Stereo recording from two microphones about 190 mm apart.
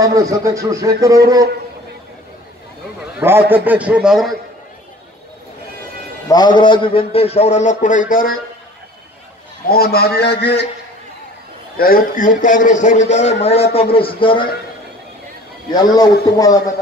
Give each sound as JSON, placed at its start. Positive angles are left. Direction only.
{"t": 0.0, "sound": "speech", "side_deg": -20}
{"t": 3.2, "sound": "speech", "side_deg": -10}
{"t": 6.2, "sound": "a man's voice", "side_deg": 20}
{"t": 9.7, "sound": "a man's voice", "side_deg": 55}
{"t": 11.7, "sound": "a man's voice", "side_deg": 50}
{"t": 15.7, "sound": "a man's voice", "side_deg": 20}